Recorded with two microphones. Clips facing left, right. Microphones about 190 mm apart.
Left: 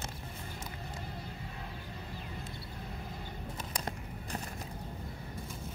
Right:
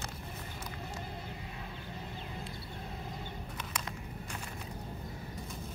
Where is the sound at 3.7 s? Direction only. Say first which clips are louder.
Left 2 dB; 35° left (ahead or behind).